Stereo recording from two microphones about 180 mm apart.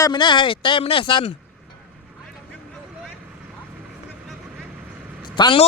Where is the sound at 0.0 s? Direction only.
25° left (ahead or behind).